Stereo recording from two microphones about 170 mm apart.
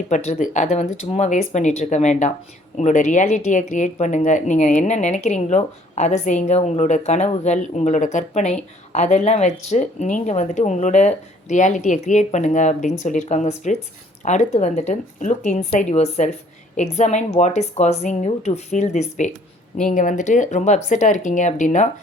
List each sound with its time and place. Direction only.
0.1 s a woman's voice: 45° left (ahead or behind)